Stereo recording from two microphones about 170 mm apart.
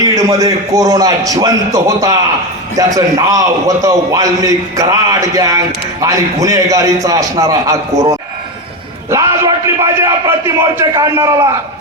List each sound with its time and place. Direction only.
0.0 s a man's voice: 20° right (ahead or behind)